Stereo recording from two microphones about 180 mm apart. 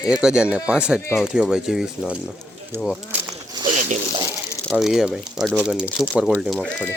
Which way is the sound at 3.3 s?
20° right (ahead or behind).